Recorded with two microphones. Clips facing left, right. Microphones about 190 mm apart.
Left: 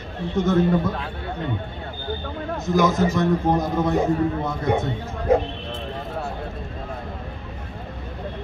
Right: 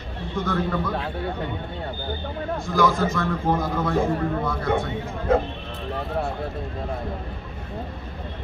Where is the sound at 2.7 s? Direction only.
20° left (ahead or behind).